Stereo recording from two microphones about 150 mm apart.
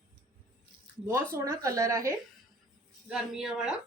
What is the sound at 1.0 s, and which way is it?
Speech, 20° right (ahead or behind).